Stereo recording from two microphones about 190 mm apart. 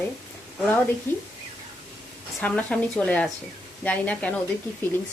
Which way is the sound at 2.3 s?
5° left (ahead or behind).